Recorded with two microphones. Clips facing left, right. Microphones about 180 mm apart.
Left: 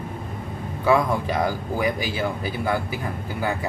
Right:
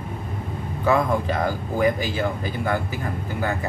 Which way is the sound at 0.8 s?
10° left (ahead or behind).